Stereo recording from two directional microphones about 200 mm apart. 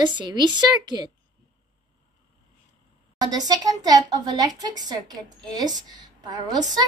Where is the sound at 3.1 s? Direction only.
20° right (ahead or behind).